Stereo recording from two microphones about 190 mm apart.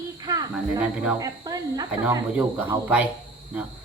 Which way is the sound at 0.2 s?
20° right (ahead or behind).